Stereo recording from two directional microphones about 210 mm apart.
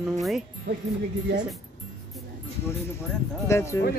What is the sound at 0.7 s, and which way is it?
Speech, 50° right (ahead or behind).